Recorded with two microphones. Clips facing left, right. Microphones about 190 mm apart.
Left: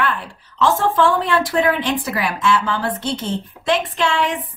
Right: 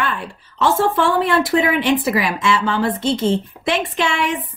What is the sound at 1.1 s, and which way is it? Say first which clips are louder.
Speech: right 2 dB; 10° right (ahead or behind).